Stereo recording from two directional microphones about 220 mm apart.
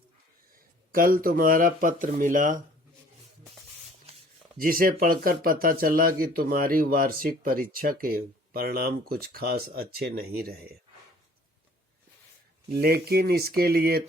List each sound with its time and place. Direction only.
0.9 s speech: 40° right (ahead or behind)
4.5 s speech: 40° right (ahead or behind)
12.7 s speech: 45° right (ahead or behind)